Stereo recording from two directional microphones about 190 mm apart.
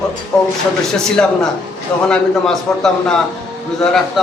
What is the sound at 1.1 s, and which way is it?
A man's voice, 5° left (ahead or behind).